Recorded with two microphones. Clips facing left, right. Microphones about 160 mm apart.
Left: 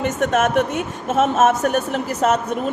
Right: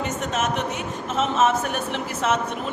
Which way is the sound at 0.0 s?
55° left (ahead or behind).